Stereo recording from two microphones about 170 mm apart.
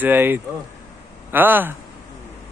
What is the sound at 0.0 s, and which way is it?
A man's voice, 10° right (ahead or behind).